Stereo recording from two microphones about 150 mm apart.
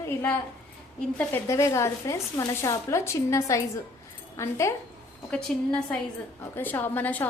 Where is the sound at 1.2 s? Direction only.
15° left (ahead or behind).